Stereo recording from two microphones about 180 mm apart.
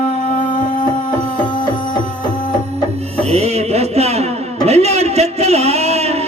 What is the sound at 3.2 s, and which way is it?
Music, 35° right (ahead or behind).